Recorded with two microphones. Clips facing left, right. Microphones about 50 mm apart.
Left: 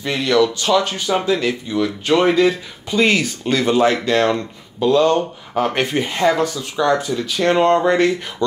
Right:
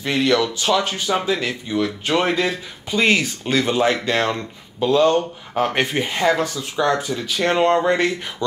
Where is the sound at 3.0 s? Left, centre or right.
Centre.